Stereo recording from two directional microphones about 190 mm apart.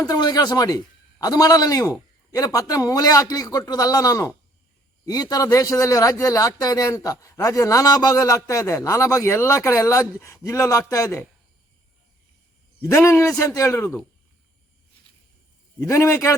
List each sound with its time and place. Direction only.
0.0 s a man's voice: 20° left (ahead or behind)
12.8 s a man's voice: 15° left (ahead or behind)
15.8 s a man's voice: 15° left (ahead or behind)